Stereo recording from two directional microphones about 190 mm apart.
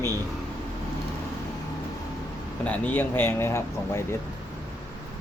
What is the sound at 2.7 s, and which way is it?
Speech, 10° left (ahead or behind).